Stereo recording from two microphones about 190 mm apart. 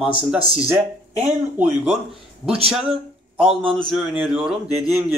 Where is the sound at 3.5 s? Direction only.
Centre (ahead or behind).